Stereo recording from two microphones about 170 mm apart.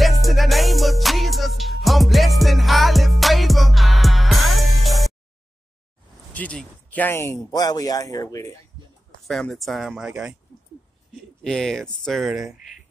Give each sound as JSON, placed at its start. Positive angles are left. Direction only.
{"t": 0.0, "sound": "music", "side_deg": 0}
{"t": 6.3, "sound": "speech", "side_deg": 10}
{"t": 9.3, "sound": "speech", "side_deg": 0}
{"t": 11.4, "sound": "speech", "side_deg": 5}